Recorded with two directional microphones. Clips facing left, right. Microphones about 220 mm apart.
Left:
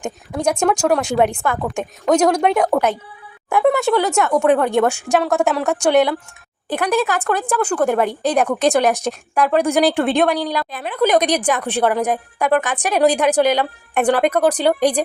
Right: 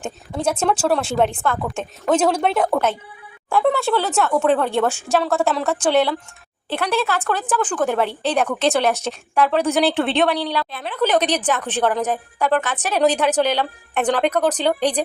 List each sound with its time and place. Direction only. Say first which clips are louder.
0.0 s a woman's voice: left 2 dB; 15° left (ahead or behind)
7.3 s a woman's voice: left 3 dB; 10° left (ahead or behind)
9.3 s a woman's voice: left 2 dB; 5° left (ahead or behind)